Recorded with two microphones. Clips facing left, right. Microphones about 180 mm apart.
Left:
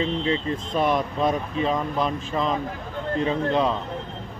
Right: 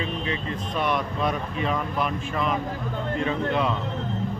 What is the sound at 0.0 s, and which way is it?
Speech, 30° left (ahead or behind).